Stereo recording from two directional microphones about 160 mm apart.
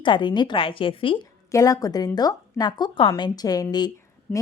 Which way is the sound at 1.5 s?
20° left (ahead or behind).